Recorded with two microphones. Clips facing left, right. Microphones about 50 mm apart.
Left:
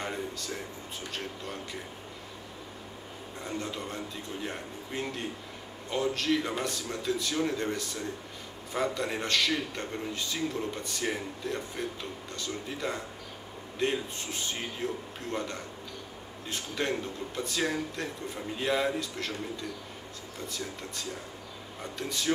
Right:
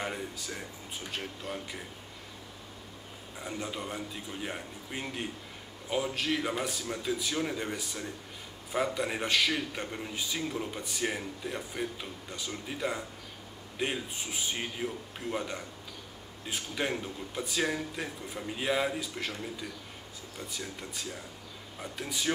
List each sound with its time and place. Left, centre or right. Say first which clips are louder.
0.0 s a man's voice: left 1 dB; centre
3.3 s a man's voice: left 1 dB; centre
20.4 s a man's voice: left 3 dB; centre